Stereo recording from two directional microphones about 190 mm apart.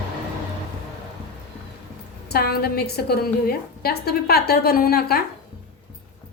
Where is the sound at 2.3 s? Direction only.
55° left (ahead or behind).